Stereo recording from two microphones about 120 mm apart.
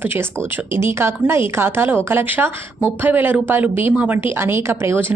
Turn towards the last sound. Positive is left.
turn(degrees=-20)  # may be behind; listen again after turning